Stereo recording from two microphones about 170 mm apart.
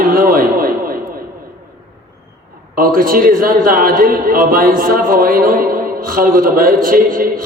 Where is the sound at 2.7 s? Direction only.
60° right (ahead or behind).